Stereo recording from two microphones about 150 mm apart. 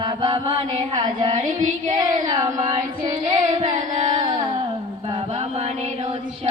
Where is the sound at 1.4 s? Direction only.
55° right (ahead or behind).